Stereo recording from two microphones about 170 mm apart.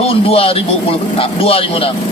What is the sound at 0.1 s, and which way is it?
A man's voice, 35° left (ahead or behind).